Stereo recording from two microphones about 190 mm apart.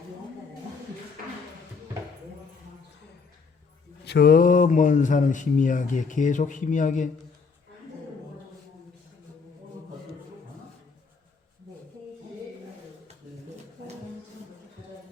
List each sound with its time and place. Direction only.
4.0 s speech: 55° left (ahead or behind); by 7.1 s 40° left (ahead or behind)